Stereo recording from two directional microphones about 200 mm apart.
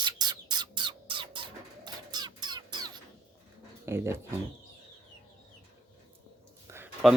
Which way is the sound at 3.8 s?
10° right (ahead or behind).